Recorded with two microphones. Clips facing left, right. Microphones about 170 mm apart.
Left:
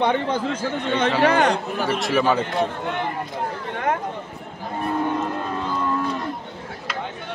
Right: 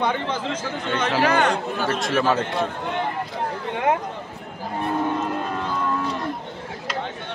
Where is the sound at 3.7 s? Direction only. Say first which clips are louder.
Right 3 dB; 15° right (ahead or behind).